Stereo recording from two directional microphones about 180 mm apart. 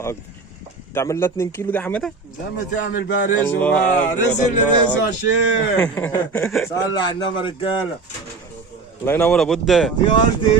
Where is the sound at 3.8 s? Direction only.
45° left (ahead or behind).